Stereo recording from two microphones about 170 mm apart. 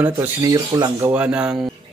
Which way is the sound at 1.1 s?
5° right (ahead or behind).